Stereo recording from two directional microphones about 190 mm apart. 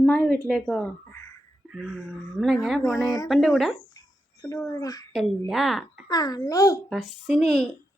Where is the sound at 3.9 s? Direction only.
20° left (ahead or behind).